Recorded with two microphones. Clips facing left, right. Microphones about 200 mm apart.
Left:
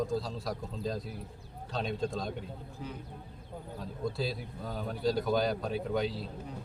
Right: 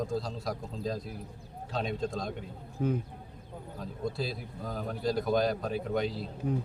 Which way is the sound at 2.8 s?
50° right (ahead or behind).